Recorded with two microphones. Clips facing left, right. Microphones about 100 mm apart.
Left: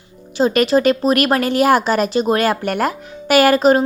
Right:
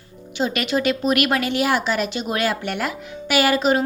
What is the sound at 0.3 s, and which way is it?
Speech, 40° left (ahead or behind).